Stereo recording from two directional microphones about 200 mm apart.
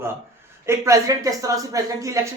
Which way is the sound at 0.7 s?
15° right (ahead or behind).